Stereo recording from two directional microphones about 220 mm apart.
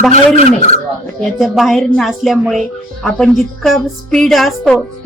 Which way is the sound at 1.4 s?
Centre (ahead or behind).